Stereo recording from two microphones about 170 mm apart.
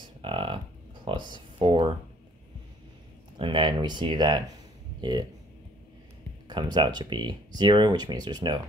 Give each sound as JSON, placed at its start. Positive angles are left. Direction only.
{"t": 0.2, "sound": "a sound", "side_deg": -30}
{"t": 3.3, "sound": "speech", "side_deg": -30}
{"t": 6.4, "sound": "speech", "side_deg": -25}